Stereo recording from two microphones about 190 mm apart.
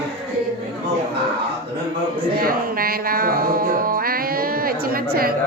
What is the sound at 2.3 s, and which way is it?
Music, 50° right (ahead or behind).